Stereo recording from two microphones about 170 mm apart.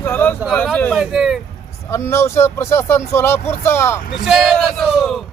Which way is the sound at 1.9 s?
15° left (ahead or behind).